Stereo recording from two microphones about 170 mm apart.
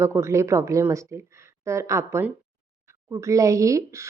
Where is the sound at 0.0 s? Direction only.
15° right (ahead or behind).